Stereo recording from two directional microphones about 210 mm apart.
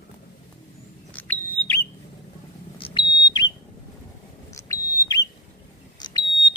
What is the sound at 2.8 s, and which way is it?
Smoke detector, 25° left (ahead or behind).